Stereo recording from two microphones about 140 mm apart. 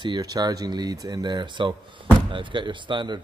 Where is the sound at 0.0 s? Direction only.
30° right (ahead or behind).